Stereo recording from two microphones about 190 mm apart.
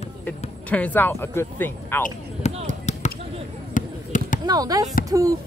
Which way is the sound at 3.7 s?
45° left (ahead or behind).